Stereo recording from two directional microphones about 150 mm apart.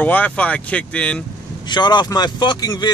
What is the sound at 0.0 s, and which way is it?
Speech, 10° left (ahead or behind).